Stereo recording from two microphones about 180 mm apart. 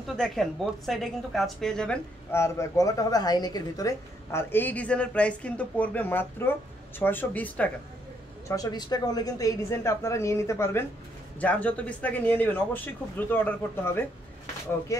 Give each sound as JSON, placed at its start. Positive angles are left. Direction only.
{"t": 0.0, "sound": "a woman's voice", "side_deg": 0}
{"t": 2.3, "sound": "a woman's voice", "side_deg": 15}
{"t": 8.5, "sound": "a woman's voice", "side_deg": 20}